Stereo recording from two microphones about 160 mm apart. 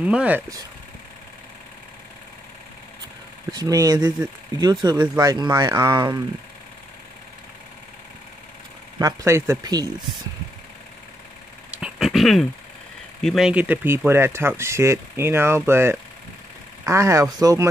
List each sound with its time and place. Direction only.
0.0 s speech: 10° right (ahead or behind)
3.5 s speech: 25° right (ahead or behind)
8.9 s speech: 20° right (ahead or behind)
11.7 s a sound: 5° right (ahead or behind)
13.2 s speech: centre (ahead or behind); by 17.6 s 20° right (ahead or behind)